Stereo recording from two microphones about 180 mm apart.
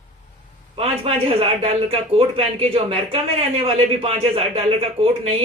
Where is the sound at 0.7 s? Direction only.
35° right (ahead or behind).